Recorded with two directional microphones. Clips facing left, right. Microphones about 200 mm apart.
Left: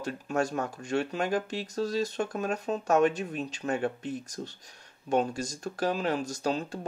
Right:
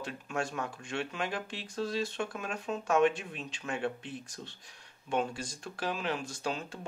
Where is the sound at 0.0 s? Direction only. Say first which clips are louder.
Left 6 dB; 40° left (ahead or behind).